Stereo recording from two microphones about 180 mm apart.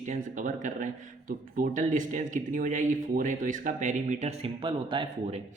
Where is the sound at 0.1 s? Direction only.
45° right (ahead or behind); by 5.0 s 30° right (ahead or behind).